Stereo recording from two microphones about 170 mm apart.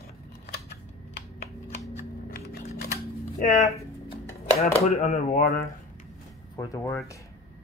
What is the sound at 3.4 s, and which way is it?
Speech, 50° left (ahead or behind).